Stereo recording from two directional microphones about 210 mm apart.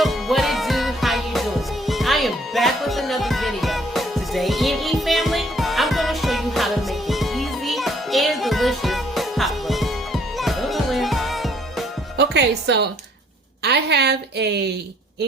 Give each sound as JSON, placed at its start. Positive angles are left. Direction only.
{"t": 0.0, "sound": "music", "side_deg": 0}
{"t": 12.1, "sound": "music", "side_deg": -55}
{"t": 13.6, "sound": "a woman's voice", "side_deg": -50}